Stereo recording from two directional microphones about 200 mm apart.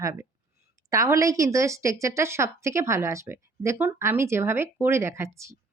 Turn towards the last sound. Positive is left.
turn(degrees=-15)  # may be behind; listen again after turning